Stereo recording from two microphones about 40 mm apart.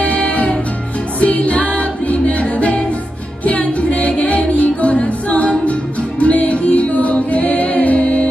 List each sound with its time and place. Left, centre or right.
0.0 s music: left